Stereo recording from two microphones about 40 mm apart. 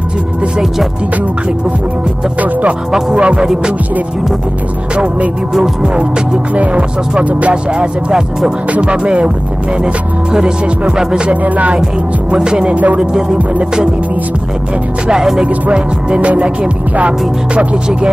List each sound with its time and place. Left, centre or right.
3.2 s music: right
4.9 s music: right
6.5 s music: right
11.4 s music: right
12.4 s music: right
12.7 s music: right
13.0 s music: centre
15.4 s music: right